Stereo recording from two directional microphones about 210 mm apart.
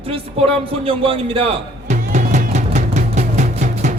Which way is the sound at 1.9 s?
35° right (ahead or behind).